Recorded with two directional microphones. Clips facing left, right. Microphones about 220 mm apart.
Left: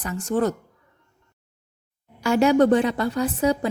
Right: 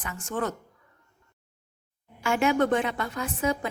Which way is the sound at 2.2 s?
35° left (ahead or behind).